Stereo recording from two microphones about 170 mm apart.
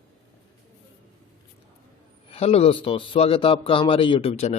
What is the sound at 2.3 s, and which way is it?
A man's voice, 35° left (ahead or behind).